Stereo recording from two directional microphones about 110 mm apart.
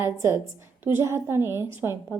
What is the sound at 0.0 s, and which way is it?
A woman's voice, 25° right (ahead or behind).